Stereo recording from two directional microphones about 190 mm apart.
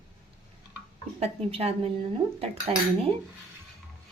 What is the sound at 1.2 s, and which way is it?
Speech, 30° right (ahead or behind).